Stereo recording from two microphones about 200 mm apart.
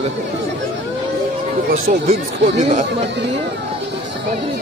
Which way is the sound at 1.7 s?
35° right (ahead or behind).